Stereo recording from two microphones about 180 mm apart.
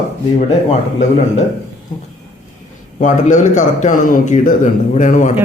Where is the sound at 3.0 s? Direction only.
45° left (ahead or behind).